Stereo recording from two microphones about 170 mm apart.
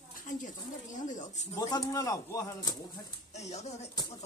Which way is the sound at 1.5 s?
20° left (ahead or behind).